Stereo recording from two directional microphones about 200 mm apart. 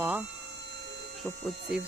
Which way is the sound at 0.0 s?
10° right (ahead or behind).